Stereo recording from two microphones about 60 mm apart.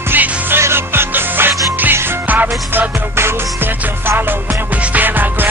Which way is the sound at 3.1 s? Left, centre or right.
Right.